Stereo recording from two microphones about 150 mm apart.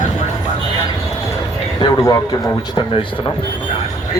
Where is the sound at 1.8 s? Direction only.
25° left (ahead or behind).